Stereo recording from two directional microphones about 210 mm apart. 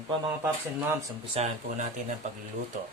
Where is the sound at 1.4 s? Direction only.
30° right (ahead or behind).